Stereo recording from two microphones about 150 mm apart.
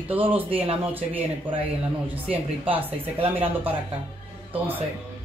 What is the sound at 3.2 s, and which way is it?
Speech, 35° right (ahead or behind).